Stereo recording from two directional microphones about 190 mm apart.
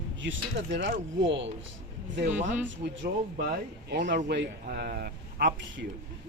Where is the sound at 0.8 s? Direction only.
70° right (ahead or behind).